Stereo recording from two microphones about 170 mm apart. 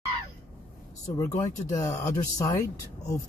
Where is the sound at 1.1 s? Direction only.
20° left (ahead or behind).